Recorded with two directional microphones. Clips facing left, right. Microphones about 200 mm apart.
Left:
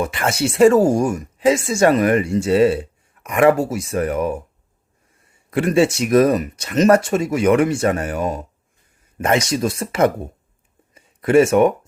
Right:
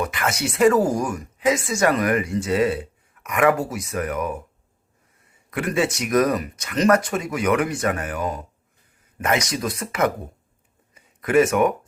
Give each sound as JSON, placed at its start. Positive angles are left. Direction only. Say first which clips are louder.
{"t": 0.0, "sound": "speech", "louder": "left 4 dB", "side_deg": 30}
{"t": 5.5, "sound": "speech", "louder": "left 7 dB", "side_deg": 30}
{"t": 10.9, "sound": "a sound", "louder": "left 4 dB", "side_deg": 30}